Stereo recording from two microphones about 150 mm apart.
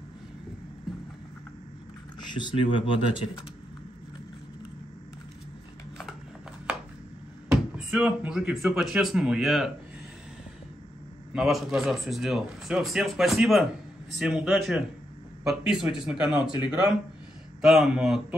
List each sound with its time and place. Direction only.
2.3 s speech: 35° left (ahead or behind)
7.7 s a man's voice: 10° right (ahead or behind)
11.3 s a man's voice: centre (ahead or behind)